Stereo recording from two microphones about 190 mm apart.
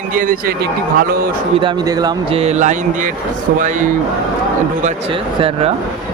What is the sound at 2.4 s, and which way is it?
Speech, 35° right (ahead or behind).